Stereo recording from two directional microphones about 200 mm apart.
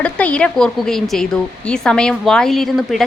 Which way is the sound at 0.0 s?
5° left (ahead or behind).